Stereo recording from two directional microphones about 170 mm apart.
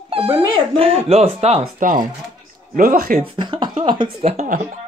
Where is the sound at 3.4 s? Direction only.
25° right (ahead or behind).